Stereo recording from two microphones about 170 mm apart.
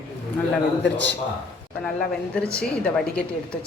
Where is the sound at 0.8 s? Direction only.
10° left (ahead or behind).